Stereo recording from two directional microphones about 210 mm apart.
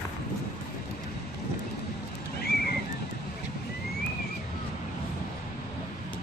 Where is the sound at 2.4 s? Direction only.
45° left (ahead or behind).